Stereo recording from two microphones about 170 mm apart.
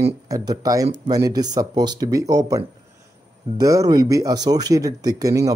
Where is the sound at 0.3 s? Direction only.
20° right (ahead or behind).